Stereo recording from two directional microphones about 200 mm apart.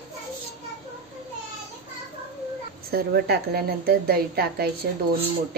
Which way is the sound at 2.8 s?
50° right (ahead or behind).